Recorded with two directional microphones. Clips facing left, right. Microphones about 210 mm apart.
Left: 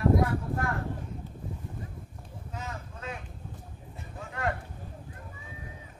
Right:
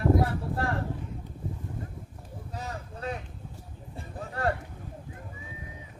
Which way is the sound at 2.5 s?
35° right (ahead or behind).